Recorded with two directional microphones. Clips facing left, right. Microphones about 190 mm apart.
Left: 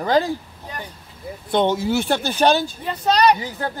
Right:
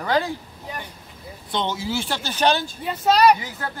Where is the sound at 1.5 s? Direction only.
55° left (ahead or behind).